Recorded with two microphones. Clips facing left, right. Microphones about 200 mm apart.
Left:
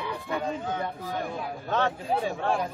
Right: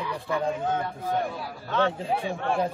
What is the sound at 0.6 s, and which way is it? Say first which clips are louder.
Speech: right 3 dB; 50° right (ahead or behind).